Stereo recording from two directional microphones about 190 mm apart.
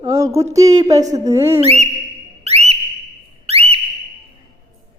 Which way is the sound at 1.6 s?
35° right (ahead or behind).